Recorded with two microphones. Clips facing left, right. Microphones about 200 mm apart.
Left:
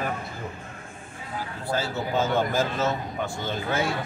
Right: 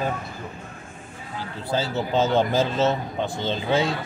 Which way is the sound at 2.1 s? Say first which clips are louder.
Right 4 dB; 20° right (ahead or behind).